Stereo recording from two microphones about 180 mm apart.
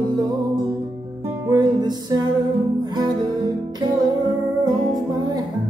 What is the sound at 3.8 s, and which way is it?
Music, 20° right (ahead or behind).